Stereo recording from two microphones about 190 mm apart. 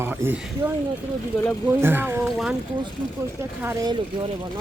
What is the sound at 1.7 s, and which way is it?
Speech, 10° right (ahead or behind).